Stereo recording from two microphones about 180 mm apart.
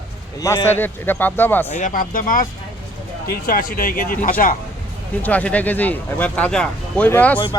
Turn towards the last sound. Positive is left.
turn(degrees=10)  # may be behind; listen again after turning